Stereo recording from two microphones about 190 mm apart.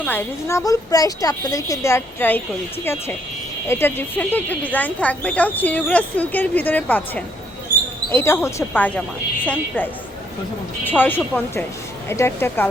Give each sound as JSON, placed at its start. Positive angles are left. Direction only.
{"t": 0.0, "sound": "speech", "side_deg": 10}